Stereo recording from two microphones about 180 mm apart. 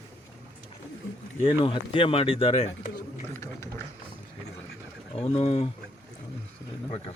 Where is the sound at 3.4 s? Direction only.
15° left (ahead or behind).